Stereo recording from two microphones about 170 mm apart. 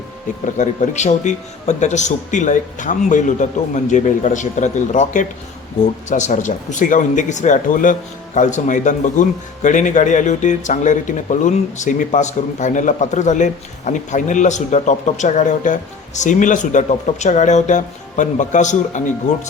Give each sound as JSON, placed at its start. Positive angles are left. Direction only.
{"t": 0.6, "sound": "speech", "side_deg": 45}